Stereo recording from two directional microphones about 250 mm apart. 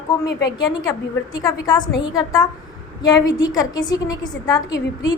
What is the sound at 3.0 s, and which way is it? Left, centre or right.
A woman's voice, centre.